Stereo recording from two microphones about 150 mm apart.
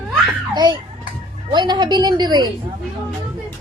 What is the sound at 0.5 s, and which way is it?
Speech, 30° right (ahead or behind).